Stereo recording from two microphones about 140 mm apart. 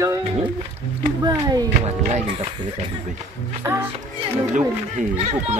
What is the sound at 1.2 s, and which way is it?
Speech, 30° right (ahead or behind).